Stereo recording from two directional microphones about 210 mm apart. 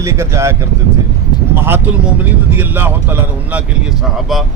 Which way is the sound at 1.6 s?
10° right (ahead or behind).